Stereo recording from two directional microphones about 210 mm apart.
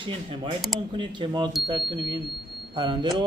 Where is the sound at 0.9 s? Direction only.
20° right (ahead or behind).